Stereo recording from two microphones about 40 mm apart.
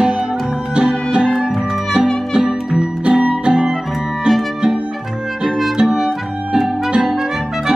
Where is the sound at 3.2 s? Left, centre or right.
Right.